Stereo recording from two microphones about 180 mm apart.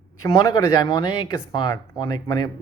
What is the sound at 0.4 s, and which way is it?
Speech, 20° left (ahead or behind).